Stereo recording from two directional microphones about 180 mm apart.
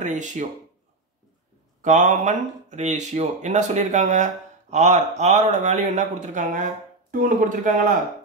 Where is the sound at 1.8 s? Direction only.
45° right (ahead or behind).